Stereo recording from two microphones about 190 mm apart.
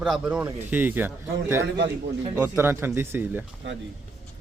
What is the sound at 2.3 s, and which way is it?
Speech, 10° right (ahead or behind).